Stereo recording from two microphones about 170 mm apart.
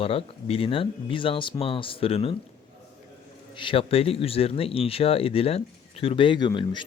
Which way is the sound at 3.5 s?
30° left (ahead or behind).